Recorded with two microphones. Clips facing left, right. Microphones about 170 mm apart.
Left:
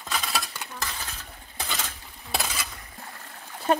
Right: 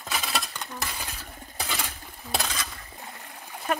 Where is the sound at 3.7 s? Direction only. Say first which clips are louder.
Left 5 dB; 30° left (ahead or behind).